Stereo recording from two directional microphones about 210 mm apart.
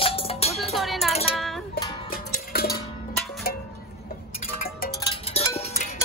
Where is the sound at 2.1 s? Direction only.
45° left (ahead or behind).